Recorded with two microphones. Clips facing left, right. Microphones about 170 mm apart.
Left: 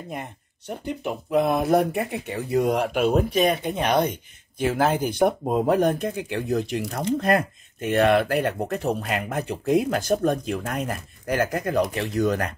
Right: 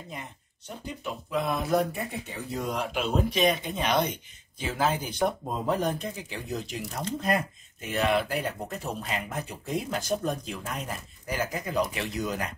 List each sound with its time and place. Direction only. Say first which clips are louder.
0.1 s speech: left 7 dB; 60° left (ahead or behind)